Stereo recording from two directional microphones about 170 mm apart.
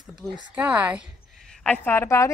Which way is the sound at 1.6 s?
10° left (ahead or behind).